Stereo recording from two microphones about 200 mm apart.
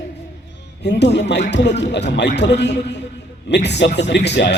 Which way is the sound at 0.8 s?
60° left (ahead or behind).